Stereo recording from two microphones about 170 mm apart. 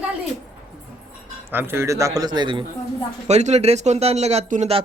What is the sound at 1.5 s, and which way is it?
A man's voice, 15° right (ahead or behind).